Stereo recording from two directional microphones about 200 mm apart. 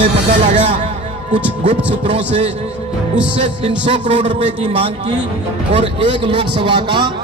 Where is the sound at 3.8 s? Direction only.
30° right (ahead or behind).